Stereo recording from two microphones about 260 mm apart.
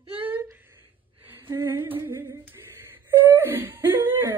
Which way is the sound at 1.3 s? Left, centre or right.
Centre.